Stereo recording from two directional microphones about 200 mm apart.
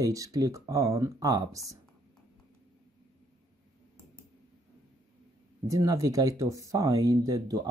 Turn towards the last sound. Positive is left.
turn(degrees=-20)  # may be behind; listen again after turning